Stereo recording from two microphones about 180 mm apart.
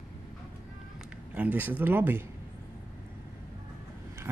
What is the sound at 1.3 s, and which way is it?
Speech, 10° right (ahead or behind).